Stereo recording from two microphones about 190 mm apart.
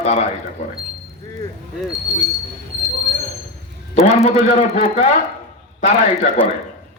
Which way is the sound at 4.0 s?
35° left (ahead or behind).